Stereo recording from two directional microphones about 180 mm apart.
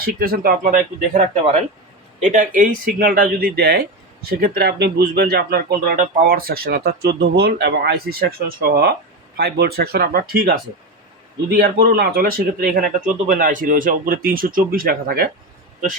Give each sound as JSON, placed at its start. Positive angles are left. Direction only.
{"t": 0.0, "sound": "speech", "side_deg": -55}